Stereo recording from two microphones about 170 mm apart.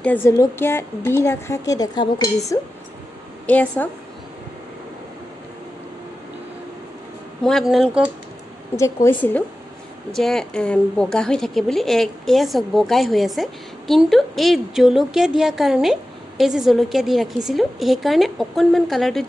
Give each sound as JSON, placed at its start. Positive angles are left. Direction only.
{"t": 0.0, "sound": "a woman's voice", "side_deg": 10}
{"t": 3.4, "sound": "a woman's voice", "side_deg": 10}
{"t": 7.4, "sound": "a woman's voice", "side_deg": 0}
{"t": 8.7, "sound": "a woman's voice", "side_deg": 15}
{"t": 10.1, "sound": "a woman's voice", "side_deg": 0}